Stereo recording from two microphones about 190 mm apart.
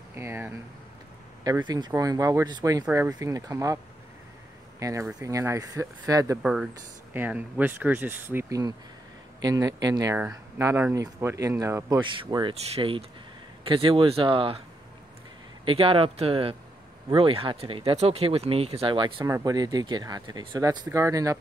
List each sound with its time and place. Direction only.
0.1 s speech: 10° right (ahead or behind)
6.4 s speech: 5° right (ahead or behind); by 14.6 s 30° right (ahead or behind)
15.6 s speech: 30° right (ahead or behind)